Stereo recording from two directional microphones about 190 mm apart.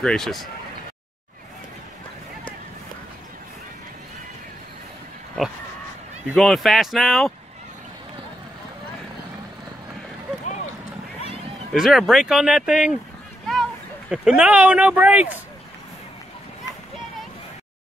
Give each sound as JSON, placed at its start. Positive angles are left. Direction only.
{"t": 0.0, "sound": "speech", "side_deg": 5}
{"t": 6.3, "sound": "speech", "side_deg": 0}
{"t": 10.4, "sound": "a sound", "side_deg": 40}
{"t": 11.7, "sound": "speech", "side_deg": 0}
{"t": 14.1, "sound": "speech", "side_deg": -5}